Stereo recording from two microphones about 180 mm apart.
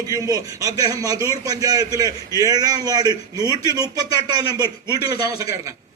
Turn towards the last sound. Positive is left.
turn(degrees=-20)  # may be behind; listen again after turning